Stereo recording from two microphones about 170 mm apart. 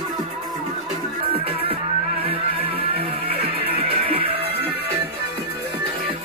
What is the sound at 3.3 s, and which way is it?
Music, 35° right (ahead or behind).